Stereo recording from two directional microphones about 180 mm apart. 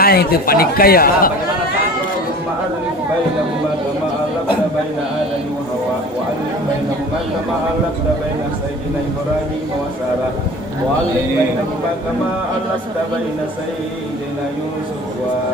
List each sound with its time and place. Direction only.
0.0 s speech: 60° left (ahead or behind)